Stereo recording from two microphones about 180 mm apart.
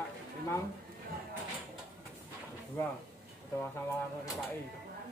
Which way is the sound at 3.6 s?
15° left (ahead or behind).